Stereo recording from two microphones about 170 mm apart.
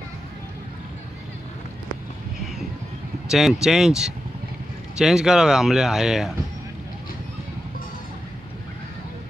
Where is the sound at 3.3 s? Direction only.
Centre (ahead or behind).